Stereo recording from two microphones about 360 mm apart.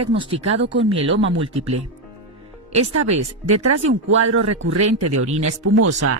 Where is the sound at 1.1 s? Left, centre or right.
Right.